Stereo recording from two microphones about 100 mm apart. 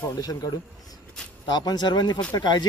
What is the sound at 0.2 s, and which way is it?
Speech, 40° left (ahead or behind).